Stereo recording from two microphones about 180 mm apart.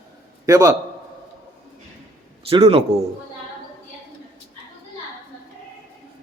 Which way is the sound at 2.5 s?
35° right (ahead or behind).